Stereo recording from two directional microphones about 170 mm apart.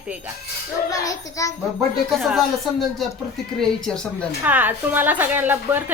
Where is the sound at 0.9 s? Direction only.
20° left (ahead or behind).